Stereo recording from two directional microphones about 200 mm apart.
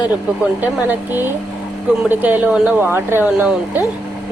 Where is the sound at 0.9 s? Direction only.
10° right (ahead or behind).